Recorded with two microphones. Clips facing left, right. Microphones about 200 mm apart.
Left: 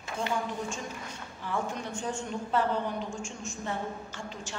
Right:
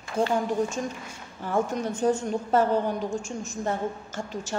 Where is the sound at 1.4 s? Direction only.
45° right (ahead or behind).